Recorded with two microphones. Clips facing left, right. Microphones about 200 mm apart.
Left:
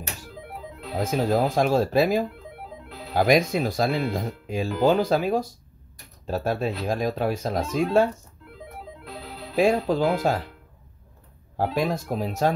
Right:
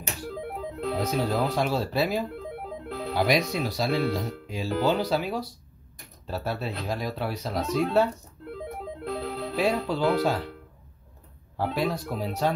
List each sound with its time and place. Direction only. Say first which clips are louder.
0.9 s speech: left 5 dB; 50° left (ahead or behind)
9.1 s music: right 8 dB; 50° right (ahead or behind)
9.6 s speech: left 5 dB; 45° left (ahead or behind)
11.5 s speech: left 3 dB; 45° left (ahead or behind)